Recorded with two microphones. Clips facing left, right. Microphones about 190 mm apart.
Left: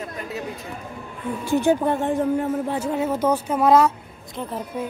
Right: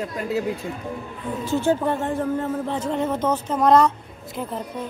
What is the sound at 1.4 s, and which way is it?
A woman's voice, 15° left (ahead or behind).